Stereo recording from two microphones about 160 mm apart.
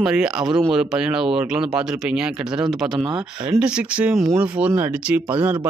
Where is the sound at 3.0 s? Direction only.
30° right (ahead or behind).